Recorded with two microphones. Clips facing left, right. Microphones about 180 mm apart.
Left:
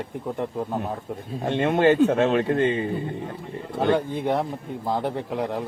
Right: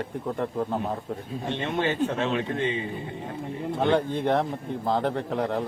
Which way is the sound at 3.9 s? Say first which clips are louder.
Even; 10° left (ahead or behind).